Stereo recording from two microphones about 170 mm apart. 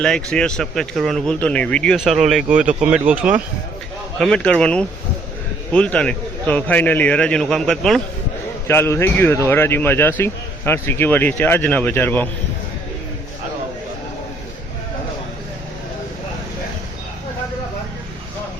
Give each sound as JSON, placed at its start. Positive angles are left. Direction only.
{"t": 0.0, "sound": "a man's voice", "side_deg": 5}
{"t": 4.2, "sound": "speech", "side_deg": 5}
{"t": 8.6, "sound": "speech", "side_deg": 15}